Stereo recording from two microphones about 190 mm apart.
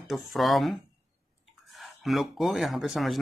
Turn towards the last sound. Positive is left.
turn(degrees=0)  # may be behind; listen again after turning